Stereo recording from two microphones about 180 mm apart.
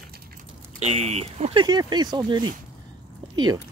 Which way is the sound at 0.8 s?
35° right (ahead or behind).